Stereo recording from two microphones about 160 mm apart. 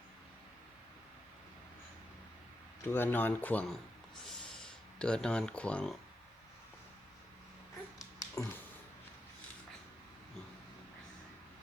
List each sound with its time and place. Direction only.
2.8 s speech: 15° left (ahead or behind)
7.9 s dog: 20° left (ahead or behind)